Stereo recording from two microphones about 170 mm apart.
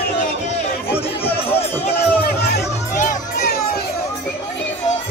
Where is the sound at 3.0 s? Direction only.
50° left (ahead or behind).